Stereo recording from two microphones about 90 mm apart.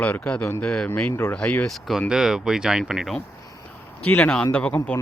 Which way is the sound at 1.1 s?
30° left (ahead or behind).